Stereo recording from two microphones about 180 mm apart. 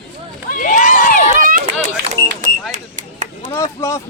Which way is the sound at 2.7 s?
45° right (ahead or behind).